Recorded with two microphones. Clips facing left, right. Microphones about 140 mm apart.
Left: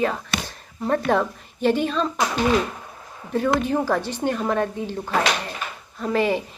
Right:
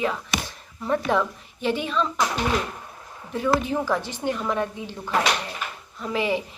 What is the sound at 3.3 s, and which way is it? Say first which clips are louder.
Speech: left 2 dB; 50° left (ahead or behind).